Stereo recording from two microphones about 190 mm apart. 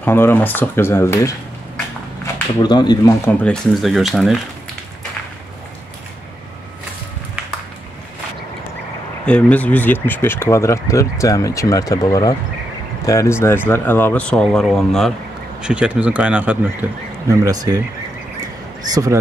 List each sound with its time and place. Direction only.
0.0 s speech: 10° left (ahead or behind)
3.3 s speech: 5° left (ahead or behind)
9.2 s speech: 5° left (ahead or behind)
17.3 s speech: 20° right (ahead or behind)
18.9 s speech: 20° right (ahead or behind)